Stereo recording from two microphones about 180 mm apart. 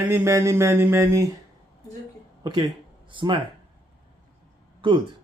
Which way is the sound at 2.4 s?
25° right (ahead or behind).